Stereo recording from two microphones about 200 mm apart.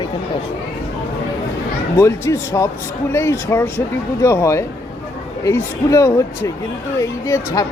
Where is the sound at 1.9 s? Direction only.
15° left (ahead or behind).